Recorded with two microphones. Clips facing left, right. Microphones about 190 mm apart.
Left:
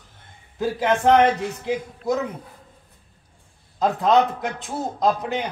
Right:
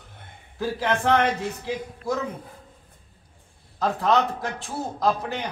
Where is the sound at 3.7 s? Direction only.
20° left (ahead or behind).